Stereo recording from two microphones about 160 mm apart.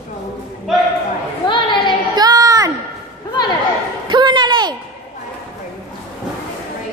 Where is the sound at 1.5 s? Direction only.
30° left (ahead or behind).